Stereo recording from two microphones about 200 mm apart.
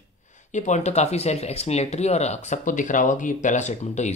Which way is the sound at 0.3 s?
35° left (ahead or behind).